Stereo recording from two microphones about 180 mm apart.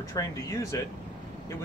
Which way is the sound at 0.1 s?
15° left (ahead or behind).